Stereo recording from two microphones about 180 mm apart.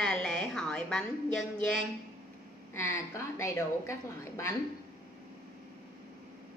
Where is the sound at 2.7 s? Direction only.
15° left (ahead or behind).